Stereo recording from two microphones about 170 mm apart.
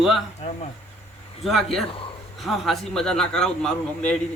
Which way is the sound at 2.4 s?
Centre (ahead or behind).